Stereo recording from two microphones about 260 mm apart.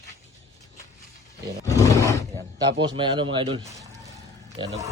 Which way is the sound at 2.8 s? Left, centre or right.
Centre.